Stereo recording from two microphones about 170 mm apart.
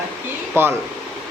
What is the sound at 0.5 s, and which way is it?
Speech, 15° right (ahead or behind).